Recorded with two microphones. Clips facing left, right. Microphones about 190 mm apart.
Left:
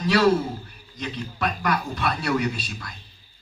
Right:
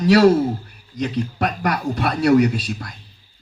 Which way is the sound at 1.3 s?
70° right (ahead or behind).